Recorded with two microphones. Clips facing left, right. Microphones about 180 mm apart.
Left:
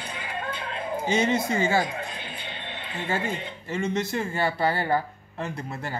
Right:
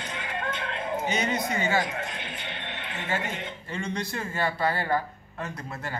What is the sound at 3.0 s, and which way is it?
Speech, 30° left (ahead or behind).